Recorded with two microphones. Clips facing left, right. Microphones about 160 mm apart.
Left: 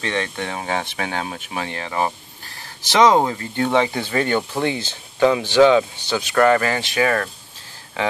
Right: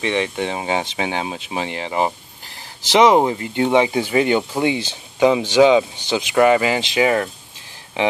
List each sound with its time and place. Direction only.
0.0 s speech: 10° right (ahead or behind)